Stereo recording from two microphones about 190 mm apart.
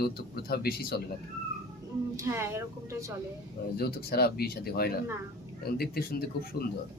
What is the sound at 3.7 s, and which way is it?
Speech, 55° left (ahead or behind).